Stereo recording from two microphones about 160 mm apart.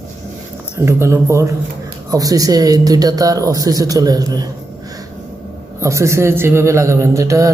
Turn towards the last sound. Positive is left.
turn(degrees=-20)  # may be behind; listen again after turning